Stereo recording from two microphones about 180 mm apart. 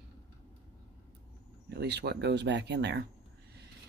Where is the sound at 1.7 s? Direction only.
70° right (ahead or behind).